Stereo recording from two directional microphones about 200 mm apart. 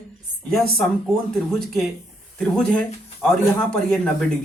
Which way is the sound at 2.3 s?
5° left (ahead or behind).